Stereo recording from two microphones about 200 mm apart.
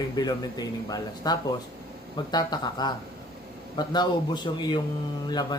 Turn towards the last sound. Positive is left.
turn(degrees=20)  # may be behind; listen again after turning